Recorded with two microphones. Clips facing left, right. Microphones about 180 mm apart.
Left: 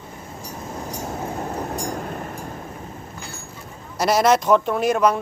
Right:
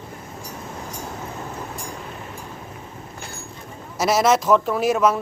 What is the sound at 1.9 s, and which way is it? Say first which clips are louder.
Vehicle: left 6 dB; 50° left (ahead or behind).